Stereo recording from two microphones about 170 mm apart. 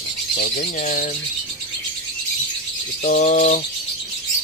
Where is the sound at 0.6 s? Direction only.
45° left (ahead or behind).